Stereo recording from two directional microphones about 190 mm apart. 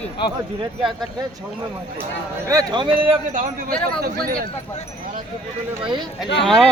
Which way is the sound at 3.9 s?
50° right (ahead or behind).